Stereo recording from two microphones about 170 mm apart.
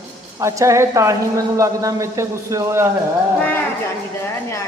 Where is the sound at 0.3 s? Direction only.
20° right (ahead or behind).